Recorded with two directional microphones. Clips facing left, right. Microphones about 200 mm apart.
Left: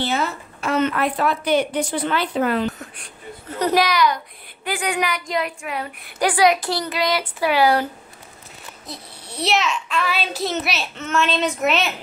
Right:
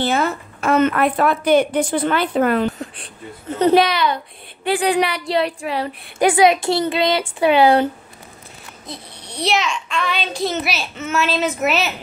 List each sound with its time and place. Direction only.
0.0 s a woman's voice: 50° right (ahead or behind)
2.8 s a woman's voice: 30° right (ahead or behind)
8.8 s a child's voice: 5° left (ahead or behind)